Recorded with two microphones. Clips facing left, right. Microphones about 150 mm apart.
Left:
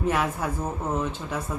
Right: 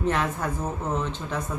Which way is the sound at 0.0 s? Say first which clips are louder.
Even; 10° left (ahead or behind).